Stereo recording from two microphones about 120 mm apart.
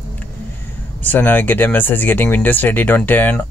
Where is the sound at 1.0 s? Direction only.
15° left (ahead or behind).